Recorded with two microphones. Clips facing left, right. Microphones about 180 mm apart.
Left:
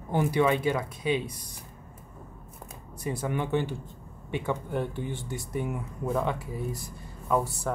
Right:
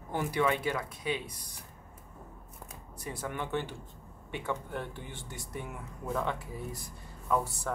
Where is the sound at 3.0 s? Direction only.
15° left (ahead or behind).